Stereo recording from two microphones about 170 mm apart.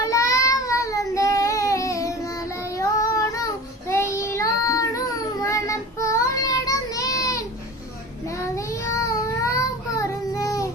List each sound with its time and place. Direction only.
0.1 s child singing: 20° left (ahead or behind)
8.5 s child singing: 20° left (ahead or behind)